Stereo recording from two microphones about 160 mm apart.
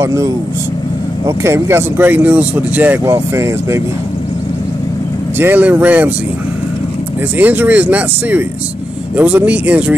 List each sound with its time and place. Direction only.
0.0 s speech: 20° right (ahead or behind)
5.4 s speech: 10° right (ahead or behind)
7.3 s speech: 10° right (ahead or behind)